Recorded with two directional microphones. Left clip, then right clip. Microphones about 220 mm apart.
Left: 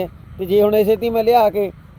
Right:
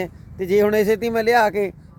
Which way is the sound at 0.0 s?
20° right (ahead or behind).